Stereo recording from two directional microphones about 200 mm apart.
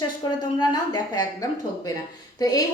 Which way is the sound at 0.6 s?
20° left (ahead or behind).